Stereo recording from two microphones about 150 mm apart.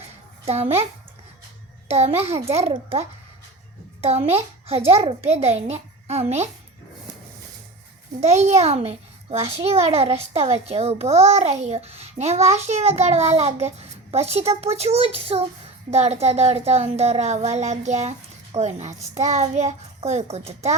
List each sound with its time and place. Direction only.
0.4 s a child's voice: 45° right (ahead or behind)
1.9 s a child's voice: 45° right (ahead or behind)
8.2 s a child's voice: 50° right (ahead or behind)